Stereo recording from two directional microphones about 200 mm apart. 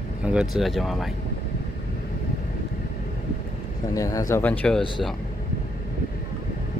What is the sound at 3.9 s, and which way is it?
Speech, 15° left (ahead or behind).